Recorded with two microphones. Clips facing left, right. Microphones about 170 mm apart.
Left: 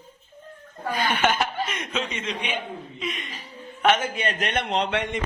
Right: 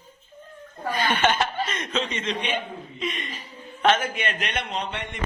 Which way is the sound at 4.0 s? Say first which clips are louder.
Left 2 dB; 35° left (ahead or behind).